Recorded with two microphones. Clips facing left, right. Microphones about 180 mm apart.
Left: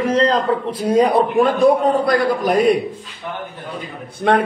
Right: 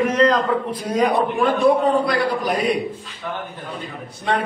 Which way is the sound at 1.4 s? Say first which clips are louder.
Left 1 dB; 45° left (ahead or behind).